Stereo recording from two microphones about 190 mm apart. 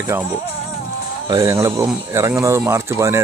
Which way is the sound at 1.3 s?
15° right (ahead or behind).